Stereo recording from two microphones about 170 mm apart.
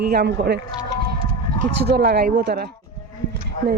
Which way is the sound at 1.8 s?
75° right (ahead or behind).